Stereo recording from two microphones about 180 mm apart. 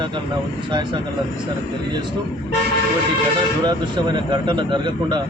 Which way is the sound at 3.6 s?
25° right (ahead or behind).